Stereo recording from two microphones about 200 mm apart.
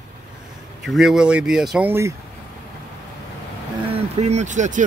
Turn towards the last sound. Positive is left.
turn(degrees=-40)  # may be behind; listen again after turning